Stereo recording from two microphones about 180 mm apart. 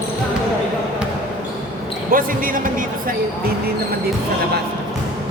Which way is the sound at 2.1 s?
50° right (ahead or behind).